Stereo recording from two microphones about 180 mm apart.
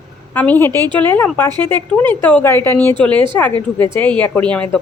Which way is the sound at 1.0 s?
10° left (ahead or behind).